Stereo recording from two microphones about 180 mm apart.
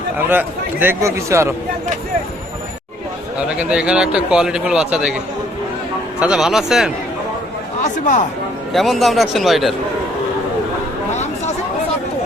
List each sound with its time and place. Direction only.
0.3 s a man's voice: 10° right (ahead or behind)
3.5 s a man's voice: 5° right (ahead or behind)
6.1 s a man's voice: 5° right (ahead or behind)
7.9 s speech: 45° left (ahead or behind)
8.7 s a man's voice: centre (ahead or behind)
11.1 s chatter: 40° left (ahead or behind)